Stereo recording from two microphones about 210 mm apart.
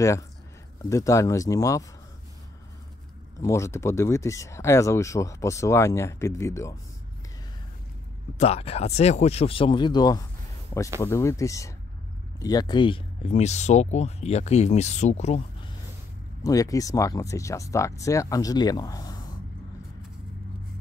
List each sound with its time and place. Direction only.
0.8 s speech: 15° left (ahead or behind)
3.3 s speech: 15° left (ahead or behind)
8.4 s speech: 30° left (ahead or behind)
16.4 s speech: 15° left (ahead or behind)